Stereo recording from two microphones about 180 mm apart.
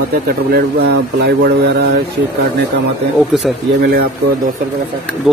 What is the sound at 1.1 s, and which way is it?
Speech, 65° right (ahead or behind).